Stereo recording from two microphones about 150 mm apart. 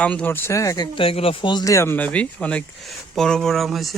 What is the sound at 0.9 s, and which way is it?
Speech, 40° left (ahead or behind).